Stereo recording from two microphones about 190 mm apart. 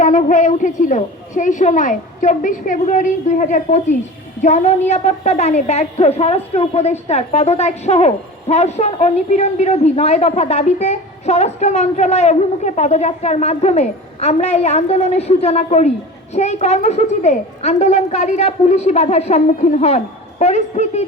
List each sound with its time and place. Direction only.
0.0 s a woman's voice: 40° left (ahead or behind)